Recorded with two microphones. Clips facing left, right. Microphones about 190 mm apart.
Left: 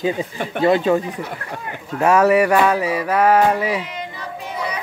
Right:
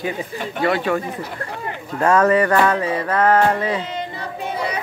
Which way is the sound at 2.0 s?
10° left (ahead or behind).